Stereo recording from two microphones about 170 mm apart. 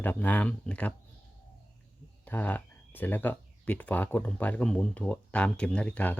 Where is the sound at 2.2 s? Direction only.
10° left (ahead or behind).